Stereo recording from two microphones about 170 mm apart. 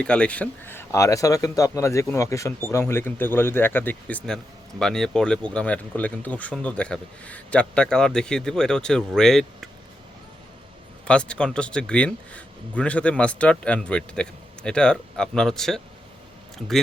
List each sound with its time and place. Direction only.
0.0 s speech: 5° left (ahead or behind)
11.0 s speech: 5° left (ahead or behind)